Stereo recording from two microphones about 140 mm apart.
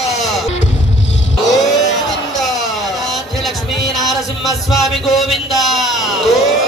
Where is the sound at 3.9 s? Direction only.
Centre (ahead or behind).